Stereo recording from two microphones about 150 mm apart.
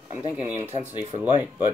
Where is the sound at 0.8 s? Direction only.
50° right (ahead or behind).